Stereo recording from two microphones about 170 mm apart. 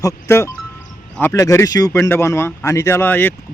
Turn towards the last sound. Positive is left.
turn(degrees=10)  # may be behind; listen again after turning